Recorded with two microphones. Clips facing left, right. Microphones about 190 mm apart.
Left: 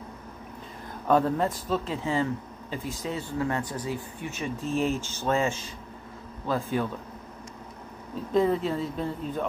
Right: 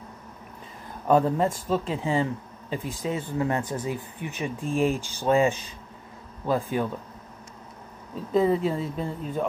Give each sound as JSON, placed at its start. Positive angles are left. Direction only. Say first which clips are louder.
{"t": 1.0, "sound": "speech", "louder": "right 2 dB", "side_deg": -10}
{"t": 8.3, "sound": "speech", "louder": "right 2 dB", "side_deg": -5}